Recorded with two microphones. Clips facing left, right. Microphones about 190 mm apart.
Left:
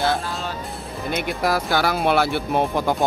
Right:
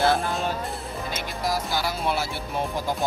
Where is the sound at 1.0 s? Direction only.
60° left (ahead or behind).